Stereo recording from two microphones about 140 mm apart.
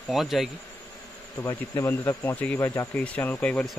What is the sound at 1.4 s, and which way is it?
Speech, 20° left (ahead or behind).